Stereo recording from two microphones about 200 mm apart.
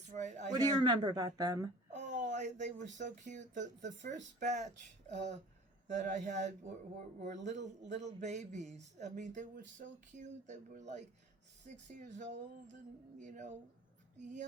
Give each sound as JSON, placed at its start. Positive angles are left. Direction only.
{"t": 0.1, "sound": "a sound", "side_deg": -35}
{"t": 0.5, "sound": "speech", "side_deg": -20}
{"t": 1.9, "sound": "speech", "side_deg": -35}